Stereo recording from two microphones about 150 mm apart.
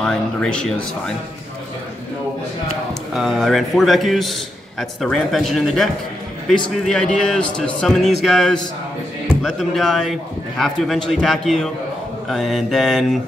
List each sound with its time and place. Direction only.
0.0 s a man's voice: 5° left (ahead or behind)
3.2 s a man's voice: centre (ahead or behind)